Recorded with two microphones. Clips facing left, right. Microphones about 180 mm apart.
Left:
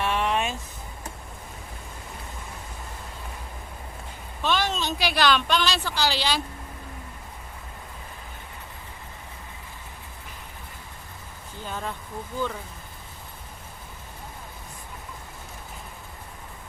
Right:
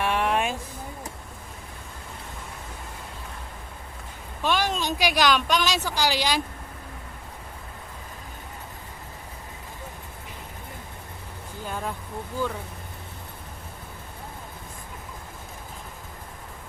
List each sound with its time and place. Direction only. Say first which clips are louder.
0.0 s a sound: right 1 dB; 10° right (ahead or behind)
4.4 s speech: right 1 dB; 10° right (ahead or behind)
11.6 s vehicle: right 1 dB; 5° right (ahead or behind)